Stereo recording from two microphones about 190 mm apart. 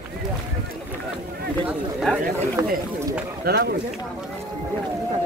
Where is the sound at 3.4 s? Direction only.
55° right (ahead or behind).